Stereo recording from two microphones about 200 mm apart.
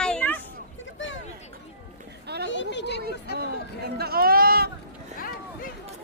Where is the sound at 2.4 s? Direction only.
65° left (ahead or behind).